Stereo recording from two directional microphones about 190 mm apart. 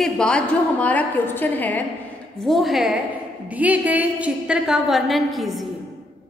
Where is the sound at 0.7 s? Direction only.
10° left (ahead or behind).